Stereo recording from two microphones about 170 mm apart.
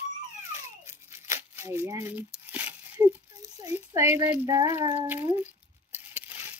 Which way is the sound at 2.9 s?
10° right (ahead or behind).